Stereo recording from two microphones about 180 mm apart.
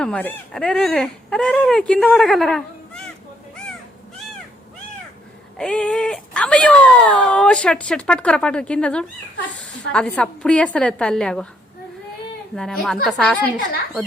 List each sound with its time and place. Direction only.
0.0 s speech: 10° left (ahead or behind)
5.5 s speech: 5° left (ahead or behind)
12.5 s speech: centre (ahead or behind)